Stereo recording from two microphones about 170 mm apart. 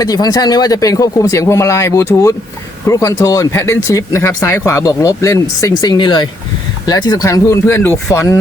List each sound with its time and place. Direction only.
0.0 s speech: 20° left (ahead or behind)